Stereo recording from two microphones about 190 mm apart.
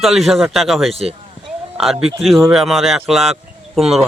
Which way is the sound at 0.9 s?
30° right (ahead or behind).